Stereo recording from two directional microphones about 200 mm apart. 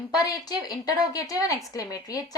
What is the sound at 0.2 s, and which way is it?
A woman's voice, 20° left (ahead or behind).